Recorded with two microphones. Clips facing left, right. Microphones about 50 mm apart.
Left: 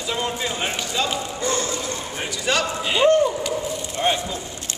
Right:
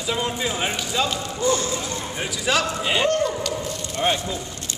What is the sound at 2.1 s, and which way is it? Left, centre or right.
Speech, centre.